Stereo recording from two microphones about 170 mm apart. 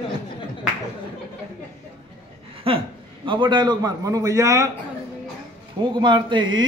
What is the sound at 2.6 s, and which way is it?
A man's voice, 35° right (ahead or behind).